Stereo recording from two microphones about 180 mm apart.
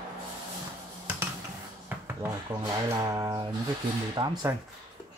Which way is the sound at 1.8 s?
15° right (ahead or behind).